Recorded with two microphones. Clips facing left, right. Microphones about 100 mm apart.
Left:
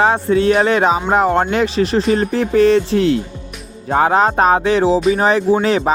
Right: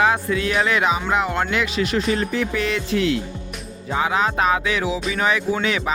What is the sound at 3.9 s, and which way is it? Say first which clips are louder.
Speech: left 7 dB; 50° left (ahead or behind).